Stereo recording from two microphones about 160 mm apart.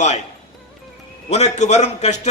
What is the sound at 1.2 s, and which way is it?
Speech, 40° left (ahead or behind).